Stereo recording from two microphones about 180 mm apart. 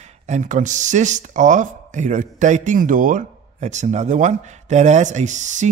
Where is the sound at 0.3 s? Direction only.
45° right (ahead or behind).